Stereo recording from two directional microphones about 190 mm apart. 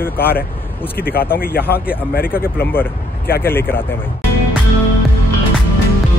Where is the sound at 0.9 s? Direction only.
50° left (ahead or behind).